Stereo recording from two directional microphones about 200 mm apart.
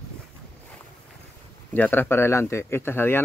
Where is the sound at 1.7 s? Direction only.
10° left (ahead or behind).